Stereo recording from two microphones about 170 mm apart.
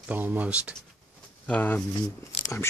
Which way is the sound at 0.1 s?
10° right (ahead or behind).